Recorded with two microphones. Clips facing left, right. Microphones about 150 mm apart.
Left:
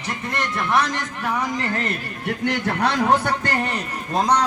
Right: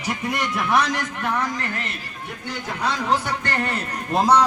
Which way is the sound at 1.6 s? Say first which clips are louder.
Left 5 dB; 35° left (ahead or behind).